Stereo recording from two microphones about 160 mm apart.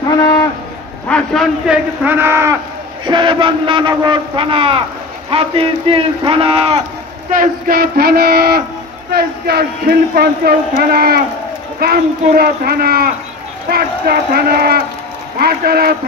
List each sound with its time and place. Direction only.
0.2 s cattle: 25° left (ahead or behind)
1.0 s a man's voice: 5° left (ahead or behind)
2.0 s speech: 15° right (ahead or behind)
3.1 s speech: 30° right (ahead or behind)
7.2 s speech: 60° right (ahead or behind)